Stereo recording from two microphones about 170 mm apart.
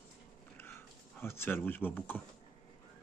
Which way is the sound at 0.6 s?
15° left (ahead or behind).